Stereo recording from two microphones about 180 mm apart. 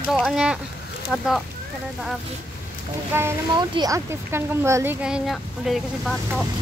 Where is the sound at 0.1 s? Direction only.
Centre (ahead or behind).